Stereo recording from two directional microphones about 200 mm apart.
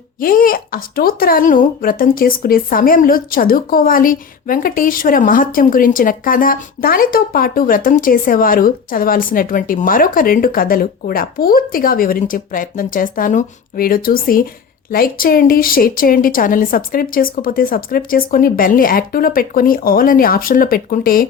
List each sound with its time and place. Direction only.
0.2 s speech: 45° left (ahead or behind)